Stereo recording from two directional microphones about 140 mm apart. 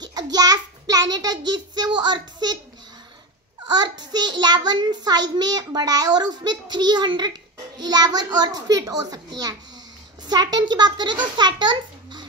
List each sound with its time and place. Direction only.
0.1 s a child's voice: 30° right (ahead or behind)
3.6 s a child's voice: 30° right (ahead or behind)